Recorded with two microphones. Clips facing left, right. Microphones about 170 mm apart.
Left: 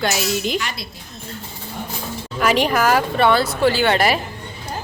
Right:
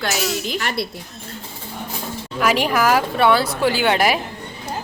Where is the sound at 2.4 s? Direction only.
5° right (ahead or behind).